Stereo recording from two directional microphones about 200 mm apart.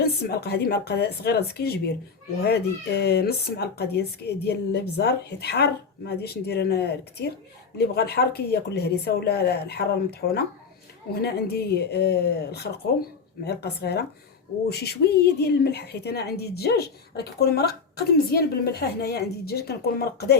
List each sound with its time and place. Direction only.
0.0 s a woman's voice: 55° left (ahead or behind)
3.0 s a woman's voice: 55° left (ahead or behind)